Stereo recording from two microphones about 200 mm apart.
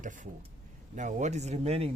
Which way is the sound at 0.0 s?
40° right (ahead or behind).